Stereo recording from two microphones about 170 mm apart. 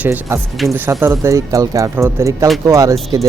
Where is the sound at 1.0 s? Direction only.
15° right (ahead or behind).